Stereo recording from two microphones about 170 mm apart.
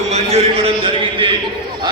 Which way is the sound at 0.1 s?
40° right (ahead or behind).